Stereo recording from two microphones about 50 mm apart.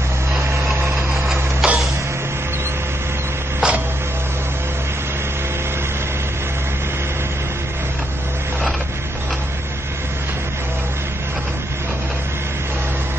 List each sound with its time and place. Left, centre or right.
1.1 s printer: centre
3.6 s printer: centre